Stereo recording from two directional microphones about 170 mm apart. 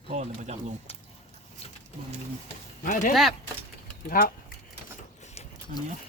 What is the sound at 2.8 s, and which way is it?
Speech, 50° left (ahead or behind).